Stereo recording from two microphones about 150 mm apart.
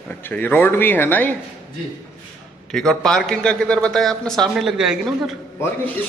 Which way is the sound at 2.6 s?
5° left (ahead or behind).